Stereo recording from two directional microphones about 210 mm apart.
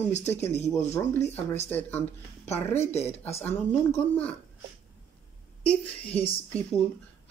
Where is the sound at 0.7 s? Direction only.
10° left (ahead or behind).